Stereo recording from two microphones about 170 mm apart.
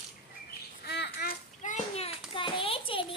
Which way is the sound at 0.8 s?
80° left.